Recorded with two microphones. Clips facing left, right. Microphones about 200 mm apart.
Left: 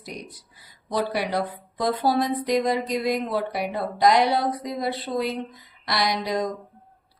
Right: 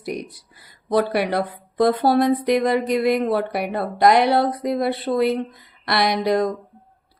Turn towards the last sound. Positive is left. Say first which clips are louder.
# right 6 dB
turn(degrees=-60)  # may be behind; listen again after turning